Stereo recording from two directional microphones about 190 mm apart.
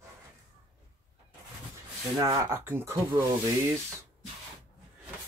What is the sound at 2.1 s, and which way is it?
Speech, 20° right (ahead or behind).